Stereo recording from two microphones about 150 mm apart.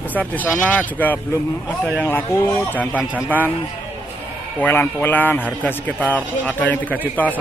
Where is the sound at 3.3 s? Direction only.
10° left (ahead or behind).